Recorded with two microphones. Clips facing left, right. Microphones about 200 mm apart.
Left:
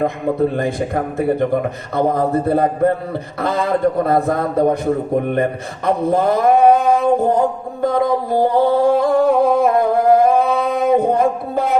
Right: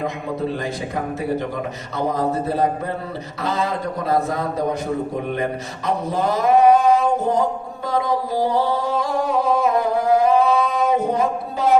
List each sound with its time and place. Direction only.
0.0 s a man's voice: 55° left (ahead or behind)
2.0 s a man's voice: 55° left (ahead or behind)
5.8 s male singing: 55° left (ahead or behind)